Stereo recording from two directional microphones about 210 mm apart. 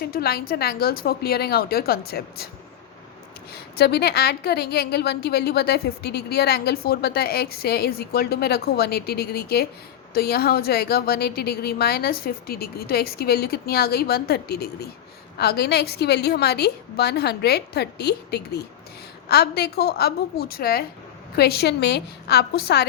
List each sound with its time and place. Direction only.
0.0 s a woman's voice: 45° left (ahead or behind)
3.5 s a woman's voice: 50° left (ahead or behind)